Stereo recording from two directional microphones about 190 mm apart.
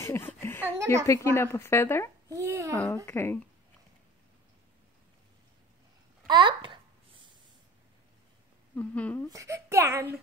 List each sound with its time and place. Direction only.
0.0 s a sound: 10° left (ahead or behind)
1.0 s a woman's voice: 15° left (ahead or behind)
2.3 s a child's voice: 15° right (ahead or behind)
3.1 s a woman's voice: 10° left (ahead or behind)
6.2 s babbling: 25° right (ahead or behind)
8.7 s a woman's voice: 10° left (ahead or behind)
9.3 s a child's voice: 15° right (ahead or behind)